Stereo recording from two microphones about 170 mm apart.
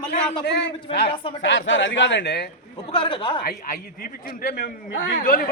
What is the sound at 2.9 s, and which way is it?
Speech, 30° left (ahead or behind).